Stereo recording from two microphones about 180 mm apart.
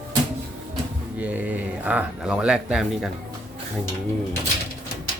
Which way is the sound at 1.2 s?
10° right (ahead or behind).